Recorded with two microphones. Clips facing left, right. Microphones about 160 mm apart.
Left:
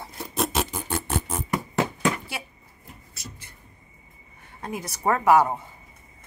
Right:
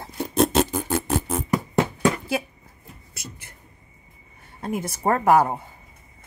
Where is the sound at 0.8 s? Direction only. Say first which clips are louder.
Right 5 dB; 40° right (ahead or behind).